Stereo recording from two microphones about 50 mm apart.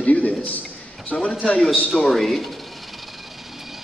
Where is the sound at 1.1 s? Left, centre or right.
Centre.